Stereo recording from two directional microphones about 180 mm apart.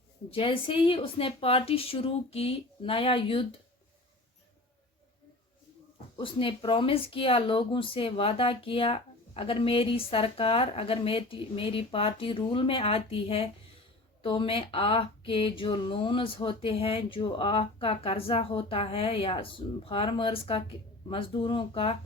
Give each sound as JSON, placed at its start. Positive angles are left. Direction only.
{"t": 0.3, "sound": "speech", "side_deg": 30}
{"t": 6.1, "sound": "speech", "side_deg": 30}